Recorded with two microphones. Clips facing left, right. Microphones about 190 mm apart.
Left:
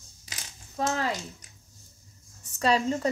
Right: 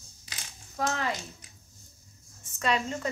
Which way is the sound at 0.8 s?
30° left (ahead or behind).